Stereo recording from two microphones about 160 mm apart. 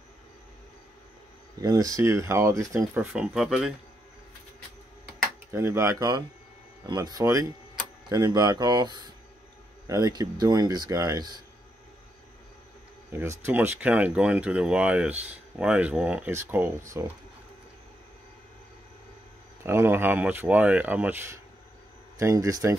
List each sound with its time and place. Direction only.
1.6 s speech: 20° right (ahead or behind); by 3.7 s centre (ahead or behind)
5.5 s speech: 15° right (ahead or behind)
13.1 s speech: 15° right (ahead or behind)
19.6 s speech: 15° right (ahead or behind)